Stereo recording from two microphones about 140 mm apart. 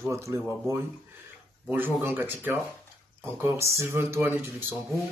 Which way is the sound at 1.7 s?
15° right (ahead or behind).